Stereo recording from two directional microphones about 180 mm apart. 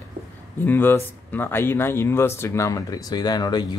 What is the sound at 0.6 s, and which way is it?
Speech, 10° left (ahead or behind).